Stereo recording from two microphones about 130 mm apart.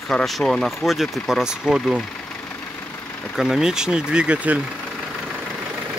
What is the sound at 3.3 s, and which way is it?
Speech, 5° right (ahead or behind).